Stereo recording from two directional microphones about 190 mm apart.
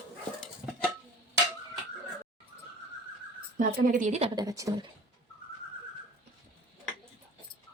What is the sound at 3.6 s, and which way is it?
Speech, 45° right (ahead or behind).